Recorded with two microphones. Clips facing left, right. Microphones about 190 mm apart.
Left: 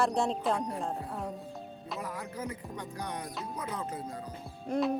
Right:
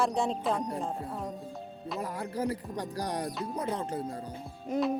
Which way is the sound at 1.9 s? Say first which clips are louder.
Right 5 dB; 30° right (ahead or behind).